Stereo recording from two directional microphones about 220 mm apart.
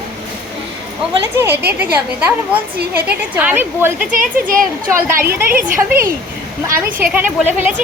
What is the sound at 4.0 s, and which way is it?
Speech, 40° right (ahead or behind).